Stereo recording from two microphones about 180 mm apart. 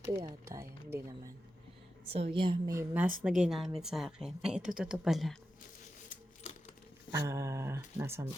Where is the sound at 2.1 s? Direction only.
35° right (ahead or behind).